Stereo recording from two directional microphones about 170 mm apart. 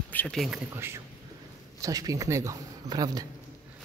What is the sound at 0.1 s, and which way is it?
Speech, 5° left (ahead or behind).